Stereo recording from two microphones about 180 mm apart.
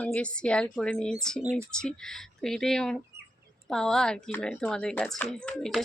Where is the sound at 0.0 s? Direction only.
5° left (ahead or behind).